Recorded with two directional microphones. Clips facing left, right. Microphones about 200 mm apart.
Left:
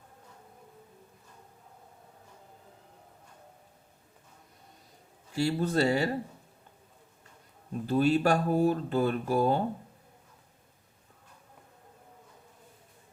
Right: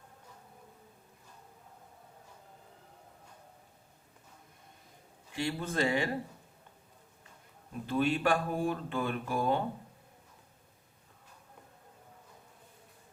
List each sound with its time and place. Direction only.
5.3 s speech: 40° left (ahead or behind)
7.9 s speech: 40° left (ahead or behind)